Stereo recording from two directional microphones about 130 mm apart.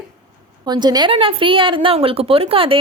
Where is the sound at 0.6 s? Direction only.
35° right (ahead or behind).